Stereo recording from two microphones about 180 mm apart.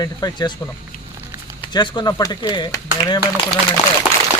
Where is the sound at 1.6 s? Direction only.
25° left (ahead or behind).